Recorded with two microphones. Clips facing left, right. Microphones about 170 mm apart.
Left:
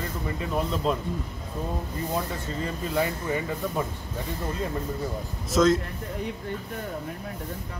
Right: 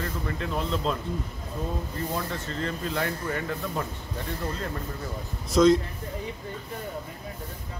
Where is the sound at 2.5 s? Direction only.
10° left (ahead or behind).